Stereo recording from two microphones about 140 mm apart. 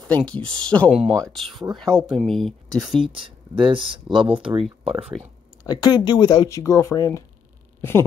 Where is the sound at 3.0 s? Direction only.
40° right (ahead or behind).